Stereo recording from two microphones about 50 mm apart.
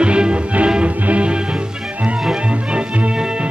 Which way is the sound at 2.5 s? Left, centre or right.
Right.